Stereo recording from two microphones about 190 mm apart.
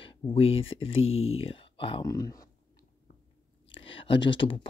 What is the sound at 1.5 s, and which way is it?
Speech, 25° left (ahead or behind).